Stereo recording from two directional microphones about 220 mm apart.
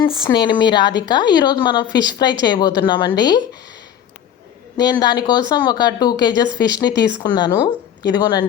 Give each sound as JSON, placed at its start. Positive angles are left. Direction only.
{"t": 0.2, "sound": "speech", "side_deg": 20}
{"t": 4.8, "sound": "speech", "side_deg": 20}